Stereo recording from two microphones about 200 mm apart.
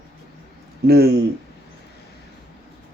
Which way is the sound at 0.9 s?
50° right (ahead or behind).